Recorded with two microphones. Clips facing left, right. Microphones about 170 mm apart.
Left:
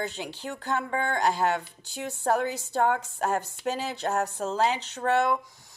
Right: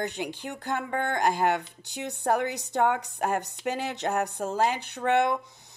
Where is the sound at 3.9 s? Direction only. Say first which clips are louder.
Even; 65° right (ahead or behind).